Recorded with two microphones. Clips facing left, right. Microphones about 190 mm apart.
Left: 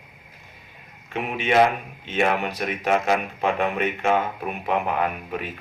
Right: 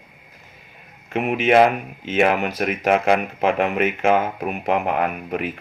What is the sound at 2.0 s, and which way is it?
Speech, 75° right (ahead or behind).